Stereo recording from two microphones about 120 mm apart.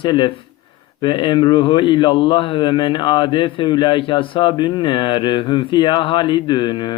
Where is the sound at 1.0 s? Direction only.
40° left (ahead or behind).